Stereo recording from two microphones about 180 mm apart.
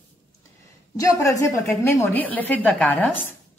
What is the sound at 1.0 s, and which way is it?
A woman's voice, 20° left (ahead or behind).